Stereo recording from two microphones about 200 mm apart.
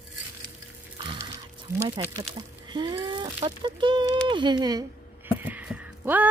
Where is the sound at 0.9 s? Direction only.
20° right (ahead or behind).